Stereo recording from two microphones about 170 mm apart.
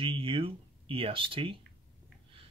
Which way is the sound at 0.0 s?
30° right (ahead or behind).